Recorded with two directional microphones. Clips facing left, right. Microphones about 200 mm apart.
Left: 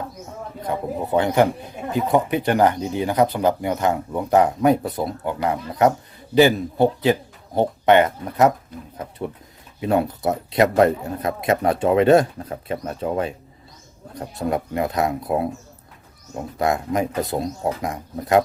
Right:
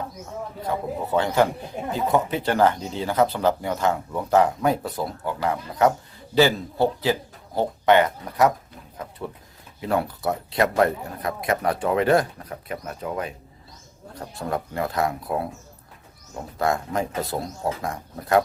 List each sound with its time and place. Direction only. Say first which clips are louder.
0.7 s speech: left 3 dB; 20° left (ahead or behind)